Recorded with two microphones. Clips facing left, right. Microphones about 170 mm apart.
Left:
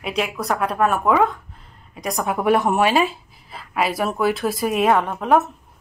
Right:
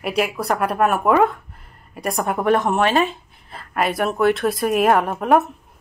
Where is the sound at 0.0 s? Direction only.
5° right (ahead or behind).